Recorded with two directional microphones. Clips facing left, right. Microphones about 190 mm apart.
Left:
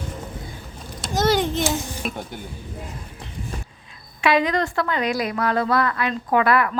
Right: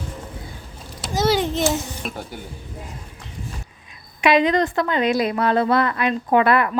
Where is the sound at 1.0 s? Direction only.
5° right (ahead or behind).